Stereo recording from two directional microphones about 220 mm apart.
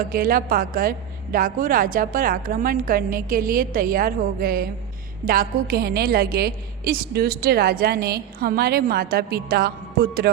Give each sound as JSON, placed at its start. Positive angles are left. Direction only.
{"t": 0.0, "sound": "a woman's voice", "side_deg": -40}